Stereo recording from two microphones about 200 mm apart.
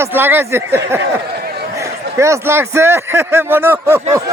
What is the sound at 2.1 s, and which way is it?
Speech, 15° right (ahead or behind).